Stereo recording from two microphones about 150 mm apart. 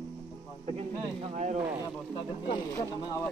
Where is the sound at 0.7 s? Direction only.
45° right (ahead or behind).